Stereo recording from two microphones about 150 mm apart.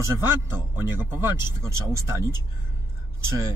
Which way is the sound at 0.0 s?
20° right (ahead or behind).